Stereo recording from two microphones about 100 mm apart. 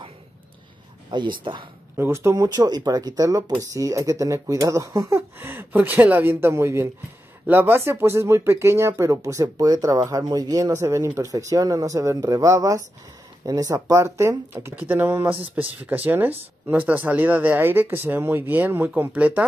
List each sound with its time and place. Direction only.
1.1 s speech: 50° right (ahead or behind)
2.0 s speech: 25° right (ahead or behind)
14.5 s speech: 20° right (ahead or behind)